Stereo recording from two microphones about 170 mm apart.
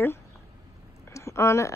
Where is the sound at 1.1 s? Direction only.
15° left (ahead or behind).